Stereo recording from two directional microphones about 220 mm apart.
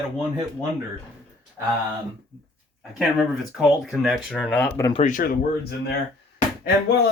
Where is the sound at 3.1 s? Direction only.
Centre (ahead or behind).